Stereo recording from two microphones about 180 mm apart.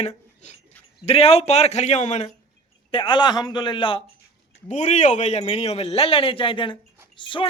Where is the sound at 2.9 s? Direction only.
25° left (ahead or behind).